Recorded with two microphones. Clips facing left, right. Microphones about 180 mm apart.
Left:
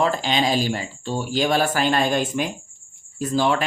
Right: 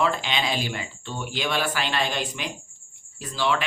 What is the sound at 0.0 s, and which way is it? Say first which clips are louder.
Speech: left 4 dB; 40° left (ahead or behind).